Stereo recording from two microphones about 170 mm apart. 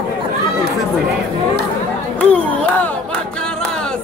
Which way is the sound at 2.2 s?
5° left (ahead or behind).